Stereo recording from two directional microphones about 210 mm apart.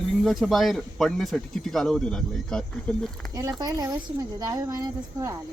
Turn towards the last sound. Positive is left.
turn(degrees=-15)  # may be behind; listen again after turning